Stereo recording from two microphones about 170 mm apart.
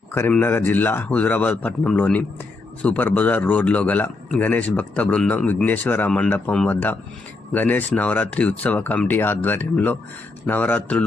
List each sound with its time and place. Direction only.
0.1 s a man's voice: 15° left (ahead or behind)